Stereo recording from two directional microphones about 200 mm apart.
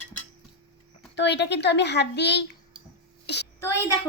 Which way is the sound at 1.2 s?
60° left (ahead or behind).